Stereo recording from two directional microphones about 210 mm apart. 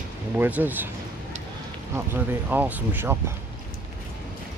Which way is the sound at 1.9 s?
10° right (ahead or behind).